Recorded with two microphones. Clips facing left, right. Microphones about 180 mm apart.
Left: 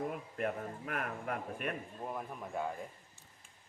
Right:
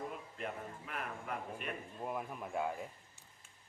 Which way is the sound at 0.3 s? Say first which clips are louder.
Left 6 dB; 55° left (ahead or behind).